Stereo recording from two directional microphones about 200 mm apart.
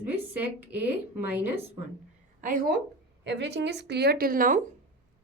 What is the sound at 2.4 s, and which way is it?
Speech, 45° right (ahead or behind).